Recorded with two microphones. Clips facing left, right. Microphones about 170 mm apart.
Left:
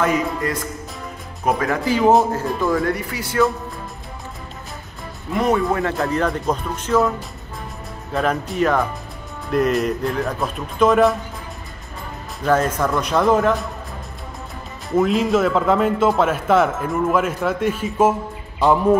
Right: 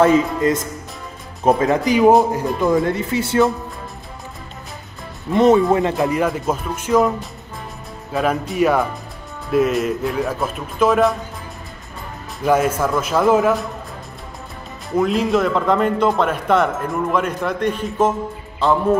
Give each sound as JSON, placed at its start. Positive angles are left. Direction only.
{"t": 0.0, "sound": "speech", "side_deg": -25}
{"t": 5.3, "sound": "speech", "side_deg": -20}
{"t": 8.1, "sound": "speech", "side_deg": -5}
{"t": 12.4, "sound": "speech", "side_deg": -10}
{"t": 14.9, "sound": "a man's voice", "side_deg": 0}